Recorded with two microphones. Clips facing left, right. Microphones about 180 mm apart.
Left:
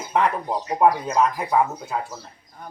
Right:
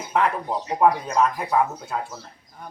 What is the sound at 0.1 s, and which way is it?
Speech, centre (ahead or behind).